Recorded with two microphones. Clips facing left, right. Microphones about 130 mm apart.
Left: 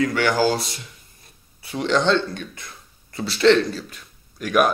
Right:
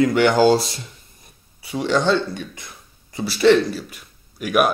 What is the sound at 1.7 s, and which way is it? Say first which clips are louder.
Speech: right 1 dB; 5° right (ahead or behind).